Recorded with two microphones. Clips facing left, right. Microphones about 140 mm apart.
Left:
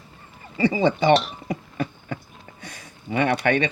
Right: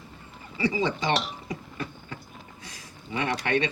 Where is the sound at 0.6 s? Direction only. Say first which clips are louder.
Left 7 dB; 60° left (ahead or behind).